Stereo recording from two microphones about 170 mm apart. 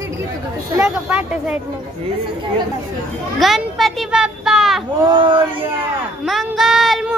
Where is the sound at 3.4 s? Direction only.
Centre (ahead or behind).